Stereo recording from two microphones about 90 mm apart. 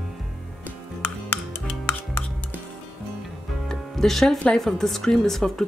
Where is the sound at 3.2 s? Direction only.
5° left (ahead or behind).